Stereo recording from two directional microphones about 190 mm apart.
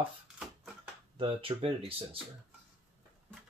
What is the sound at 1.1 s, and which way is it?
Speech, 30° right (ahead or behind).